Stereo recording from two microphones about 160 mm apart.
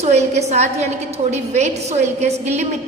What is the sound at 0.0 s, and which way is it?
A woman's voice, 45° right (ahead or behind).